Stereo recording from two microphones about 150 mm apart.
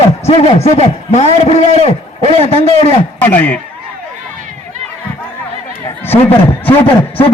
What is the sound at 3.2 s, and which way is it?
Speech, 10° left (ahead or behind).